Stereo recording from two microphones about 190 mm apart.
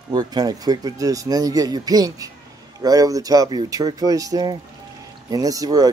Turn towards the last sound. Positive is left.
turn(degrees=-20)  # may be behind; listen again after turning